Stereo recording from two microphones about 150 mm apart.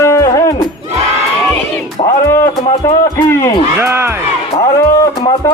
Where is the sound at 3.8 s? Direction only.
15° right (ahead or behind).